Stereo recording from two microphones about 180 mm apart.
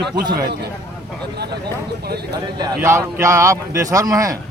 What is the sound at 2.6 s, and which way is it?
Speech, 15° right (ahead or behind).